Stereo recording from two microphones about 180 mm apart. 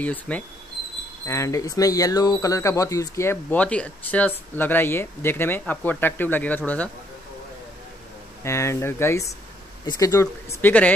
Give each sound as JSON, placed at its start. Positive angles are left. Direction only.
{"t": 0.0, "sound": "speech", "side_deg": 10}
{"t": 8.5, "sound": "speech", "side_deg": 15}